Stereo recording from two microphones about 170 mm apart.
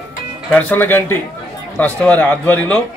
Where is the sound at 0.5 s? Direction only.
10° left (ahead or behind).